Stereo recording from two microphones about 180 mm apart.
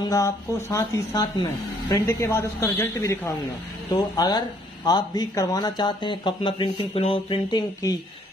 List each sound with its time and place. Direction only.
0.1 s speech: 15° left (ahead or behind)